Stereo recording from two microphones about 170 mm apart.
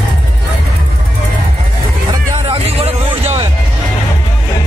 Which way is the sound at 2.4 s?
35° right (ahead or behind).